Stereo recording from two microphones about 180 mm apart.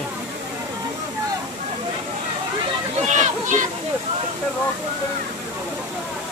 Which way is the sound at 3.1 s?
45° right (ahead or behind).